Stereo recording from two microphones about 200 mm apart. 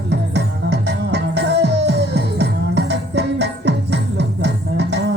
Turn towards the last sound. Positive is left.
turn(degrees=-60)  # may be behind; listen again after turning